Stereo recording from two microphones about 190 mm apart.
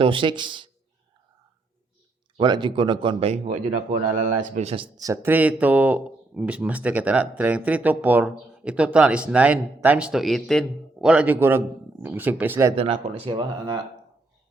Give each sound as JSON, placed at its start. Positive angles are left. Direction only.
{"t": 0.0, "sound": "speech", "side_deg": -25}
{"t": 2.4, "sound": "speech", "side_deg": -25}
{"t": 4.9, "sound": "speech", "side_deg": -15}
{"t": 12.7, "sound": "speech", "side_deg": -30}